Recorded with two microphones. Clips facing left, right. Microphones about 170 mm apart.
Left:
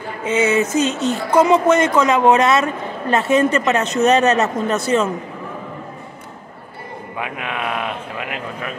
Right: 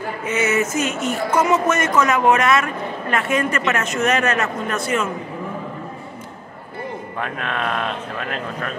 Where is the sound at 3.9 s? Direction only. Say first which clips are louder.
Left 6 dB; 35° left (ahead or behind).